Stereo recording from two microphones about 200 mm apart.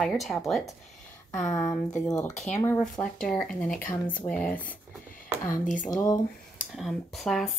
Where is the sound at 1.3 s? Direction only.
15° left (ahead or behind).